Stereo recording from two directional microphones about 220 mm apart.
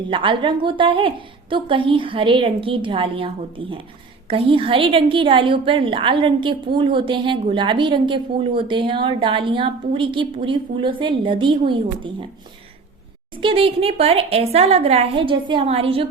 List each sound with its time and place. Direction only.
0.1 s a woman's voice: 20° right (ahead or behind)
13.3 s a woman's voice: 25° right (ahead or behind)